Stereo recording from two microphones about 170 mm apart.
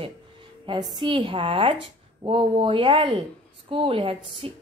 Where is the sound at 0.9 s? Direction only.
30° right (ahead or behind).